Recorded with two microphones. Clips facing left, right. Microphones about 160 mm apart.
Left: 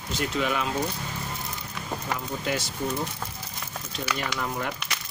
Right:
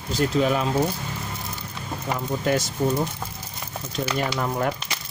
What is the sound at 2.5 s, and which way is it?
Speech, 45° right (ahead or behind).